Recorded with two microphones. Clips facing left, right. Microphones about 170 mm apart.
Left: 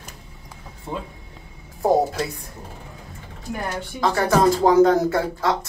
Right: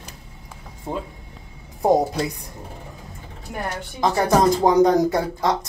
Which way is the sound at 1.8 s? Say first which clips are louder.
Right 1 dB; 20° right (ahead or behind).